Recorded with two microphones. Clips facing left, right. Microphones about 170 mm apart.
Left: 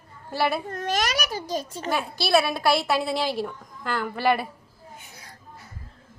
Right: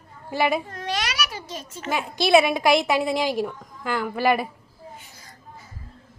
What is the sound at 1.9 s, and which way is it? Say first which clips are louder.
A woman's voice: right 4 dB; 15° right (ahead or behind).